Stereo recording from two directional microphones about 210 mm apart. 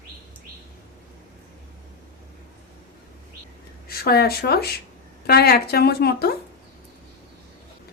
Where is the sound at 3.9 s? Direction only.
45° left (ahead or behind).